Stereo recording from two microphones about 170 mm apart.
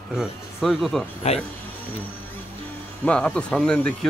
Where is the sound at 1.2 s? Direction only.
40° left (ahead or behind).